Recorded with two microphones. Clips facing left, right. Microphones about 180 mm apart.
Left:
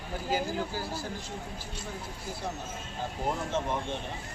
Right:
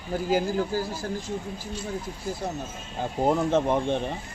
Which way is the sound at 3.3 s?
65° right (ahead or behind).